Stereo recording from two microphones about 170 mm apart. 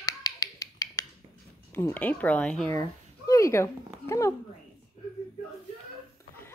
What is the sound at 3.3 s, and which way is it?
Speech, 15° left (ahead or behind).